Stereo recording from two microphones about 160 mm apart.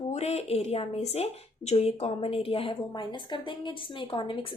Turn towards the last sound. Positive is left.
turn(degrees=30)  # may be behind; listen again after turning